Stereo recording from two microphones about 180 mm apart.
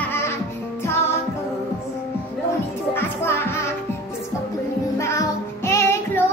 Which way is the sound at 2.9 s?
15° left (ahead or behind).